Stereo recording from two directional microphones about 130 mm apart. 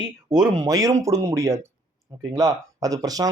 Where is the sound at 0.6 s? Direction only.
25° right (ahead or behind).